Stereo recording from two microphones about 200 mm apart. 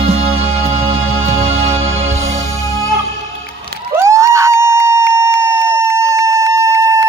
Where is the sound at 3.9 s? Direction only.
15° right (ahead or behind).